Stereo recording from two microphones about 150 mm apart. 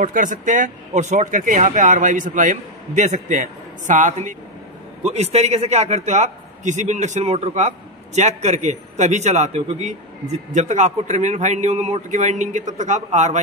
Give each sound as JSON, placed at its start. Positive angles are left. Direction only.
{"t": 0.0, "sound": "speech", "side_deg": -60}
{"t": 5.0, "sound": "a man's voice", "side_deg": -45}